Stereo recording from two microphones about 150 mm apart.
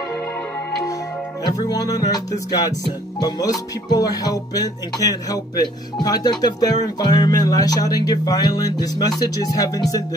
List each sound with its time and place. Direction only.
1.4 s speech: 25° left (ahead or behind)